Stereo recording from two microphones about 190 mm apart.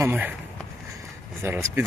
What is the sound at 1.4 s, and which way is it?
Speech, 10° right (ahead or behind).